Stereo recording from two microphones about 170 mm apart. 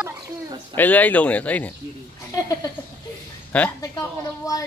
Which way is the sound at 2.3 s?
20° left (ahead or behind).